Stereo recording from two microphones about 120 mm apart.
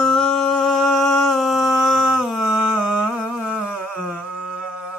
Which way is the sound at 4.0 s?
5° right (ahead or behind).